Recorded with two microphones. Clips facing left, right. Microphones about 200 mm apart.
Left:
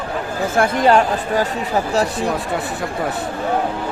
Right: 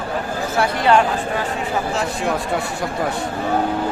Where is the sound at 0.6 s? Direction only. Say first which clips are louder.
Left 2 dB; 40° left (ahead or behind).